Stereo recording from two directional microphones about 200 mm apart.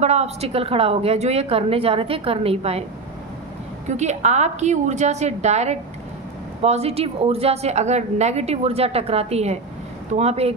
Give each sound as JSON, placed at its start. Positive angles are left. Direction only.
{"t": 0.0, "sound": "a woman's voice", "side_deg": -30}
{"t": 3.8, "sound": "a woman's voice", "side_deg": -35}